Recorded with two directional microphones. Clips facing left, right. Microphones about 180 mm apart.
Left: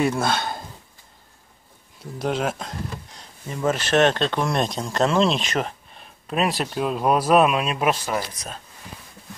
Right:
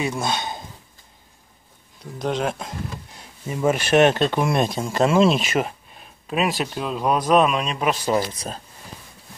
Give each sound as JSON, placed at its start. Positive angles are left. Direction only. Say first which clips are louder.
{"t": 0.0, "sound": "speech", "louder": "left 3 dB", "side_deg": 0}
{"t": 2.1, "sound": "speech", "louder": "even", "side_deg": 5}
{"t": 3.2, "sound": "speech", "louder": "right 4 dB", "side_deg": -10}
{"t": 8.0, "sound": "speech", "louder": "right 5 dB", "side_deg": -20}